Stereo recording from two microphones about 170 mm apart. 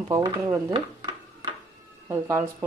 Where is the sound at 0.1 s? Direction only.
20° right (ahead or behind).